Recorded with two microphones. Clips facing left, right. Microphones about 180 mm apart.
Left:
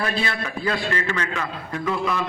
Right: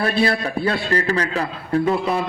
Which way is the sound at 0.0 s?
35° right (ahead or behind).